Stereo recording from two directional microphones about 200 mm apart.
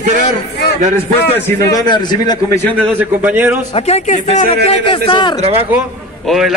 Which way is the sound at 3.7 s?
30° left (ahead or behind).